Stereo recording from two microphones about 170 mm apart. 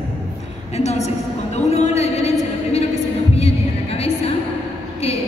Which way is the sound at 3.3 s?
35° left (ahead or behind).